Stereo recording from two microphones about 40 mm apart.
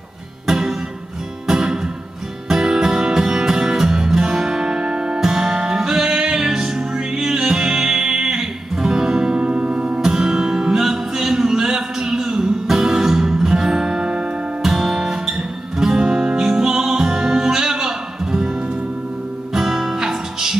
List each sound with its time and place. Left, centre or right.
0.5 s music: centre
10.0 s music: centre
14.7 s guitar: centre
19.5 s music: centre